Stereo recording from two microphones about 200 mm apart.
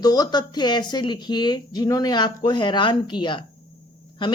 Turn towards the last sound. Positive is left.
turn(degrees=25)  # may be behind; listen again after turning